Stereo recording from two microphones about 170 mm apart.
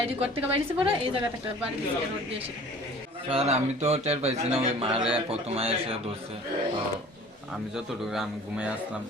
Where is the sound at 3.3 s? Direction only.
35° right (ahead or behind).